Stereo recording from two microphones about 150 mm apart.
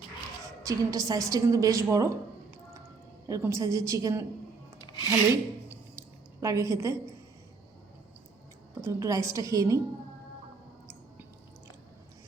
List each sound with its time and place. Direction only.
0.4 s a woman's voice: 20° right (ahead or behind)
3.2 s a woman's voice: 20° right (ahead or behind)
5.0 s a sound: 15° right (ahead or behind)
8.8 s a woman's voice: 20° right (ahead or behind)